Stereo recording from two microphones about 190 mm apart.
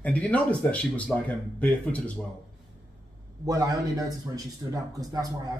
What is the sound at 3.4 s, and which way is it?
Speech, 15° right (ahead or behind).